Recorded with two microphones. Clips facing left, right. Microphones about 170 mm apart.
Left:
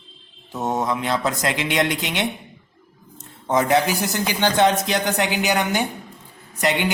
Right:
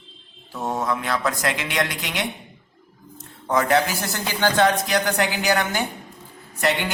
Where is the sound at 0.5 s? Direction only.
20° left (ahead or behind).